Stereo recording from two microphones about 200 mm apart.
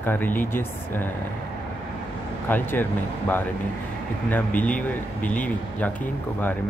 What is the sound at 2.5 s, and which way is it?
Speech, 10° left (ahead or behind).